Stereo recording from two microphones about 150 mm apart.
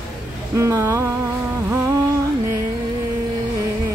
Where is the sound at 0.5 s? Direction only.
20° right (ahead or behind).